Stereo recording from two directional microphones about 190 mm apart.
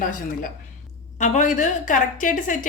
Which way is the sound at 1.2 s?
40° left (ahead or behind).